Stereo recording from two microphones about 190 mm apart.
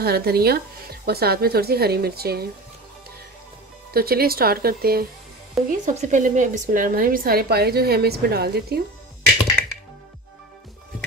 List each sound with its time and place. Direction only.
0.0 s speech: 55° right (ahead or behind)
3.9 s speech: 55° right (ahead or behind)
5.7 s speech: 40° right (ahead or behind); by 8.8 s 55° right (ahead or behind)